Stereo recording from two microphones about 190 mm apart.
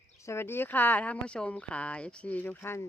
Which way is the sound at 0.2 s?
15° left (ahead or behind).